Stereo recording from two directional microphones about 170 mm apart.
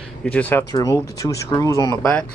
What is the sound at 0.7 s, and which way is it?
Speech, 20° left (ahead or behind).